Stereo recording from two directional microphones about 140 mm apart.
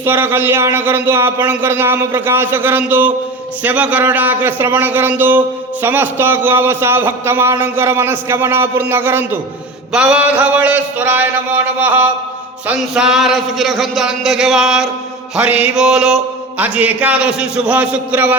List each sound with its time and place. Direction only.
0.0 s a man's voice: 15° right (ahead or behind)